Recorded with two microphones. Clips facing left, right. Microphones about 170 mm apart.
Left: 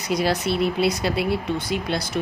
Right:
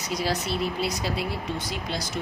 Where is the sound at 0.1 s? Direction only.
65° left (ahead or behind).